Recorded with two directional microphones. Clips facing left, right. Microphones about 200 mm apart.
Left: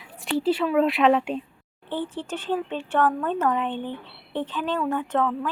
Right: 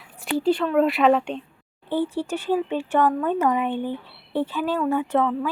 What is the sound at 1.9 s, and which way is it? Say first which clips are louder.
Speech: right 5 dB; 10° right (ahead or behind).